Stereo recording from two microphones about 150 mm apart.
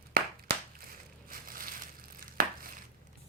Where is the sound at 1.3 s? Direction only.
70° right (ahead or behind).